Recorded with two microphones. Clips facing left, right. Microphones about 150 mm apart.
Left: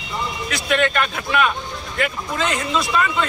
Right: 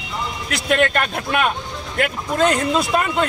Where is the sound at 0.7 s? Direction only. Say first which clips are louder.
Right 2 dB; 45° right (ahead or behind).